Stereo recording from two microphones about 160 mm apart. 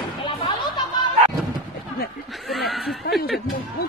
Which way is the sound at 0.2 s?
30° left (ahead or behind).